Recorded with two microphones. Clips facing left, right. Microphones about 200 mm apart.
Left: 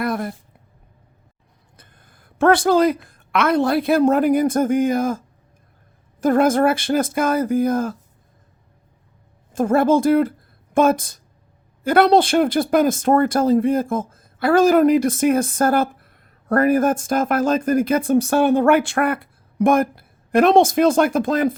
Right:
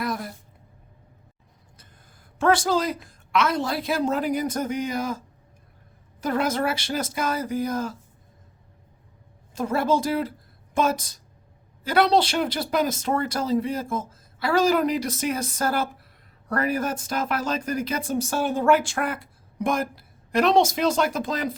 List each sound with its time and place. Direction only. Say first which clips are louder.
0.0 s a sound: left 6 dB; 55° left (ahead or behind)
1.7 s speech: left 3 dB; 60° left (ahead or behind)
9.5 s speech: left 7 dB; 50° left (ahead or behind)